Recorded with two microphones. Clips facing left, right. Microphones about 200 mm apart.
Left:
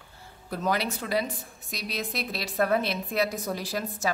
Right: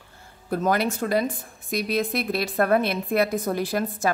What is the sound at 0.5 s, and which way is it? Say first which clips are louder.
A woman's voice: right 5 dB; 50° right (ahead or behind).